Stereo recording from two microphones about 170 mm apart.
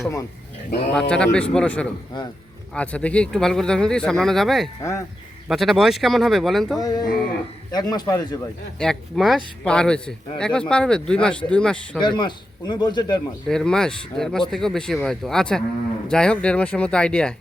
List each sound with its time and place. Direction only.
0.0 s speech: 20° left (ahead or behind)
0.9 s speech: 5° left (ahead or behind)
4.8 s speech: 20° left (ahead or behind)
5.5 s speech: centre (ahead or behind)
6.7 s speech: 20° left (ahead or behind)
8.8 s speech: centre (ahead or behind)
11.9 s speech: 25° left (ahead or behind)
13.5 s speech: 5° left (ahead or behind)